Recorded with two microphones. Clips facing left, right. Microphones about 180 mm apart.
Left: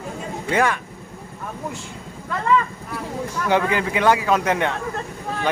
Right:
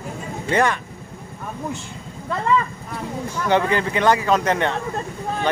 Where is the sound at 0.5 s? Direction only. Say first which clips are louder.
Right 1 dB; 5° left (ahead or behind).